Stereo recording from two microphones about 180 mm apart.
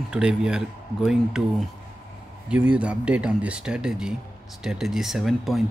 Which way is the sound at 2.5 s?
5° right (ahead or behind).